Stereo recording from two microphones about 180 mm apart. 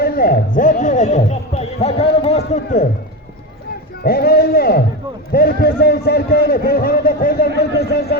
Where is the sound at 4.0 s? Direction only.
60° left (ahead or behind).